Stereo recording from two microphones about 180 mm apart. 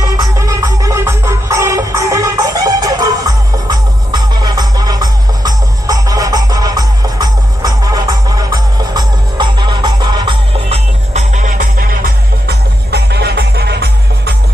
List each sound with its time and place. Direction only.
0.0 s music: 20° right (ahead or behind)
11.1 s music: 40° right (ahead or behind); by 14.3 s 65° right (ahead or behind)